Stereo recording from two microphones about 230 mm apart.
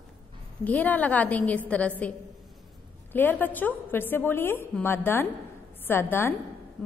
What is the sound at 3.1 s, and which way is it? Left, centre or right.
A woman's voice, centre.